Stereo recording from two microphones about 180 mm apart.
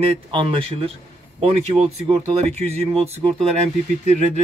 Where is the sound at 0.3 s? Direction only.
30° right (ahead or behind).